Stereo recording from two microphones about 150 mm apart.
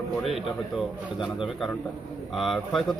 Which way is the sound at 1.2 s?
Centre (ahead or behind).